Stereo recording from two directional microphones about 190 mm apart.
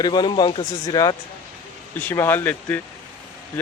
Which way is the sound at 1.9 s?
10° left (ahead or behind).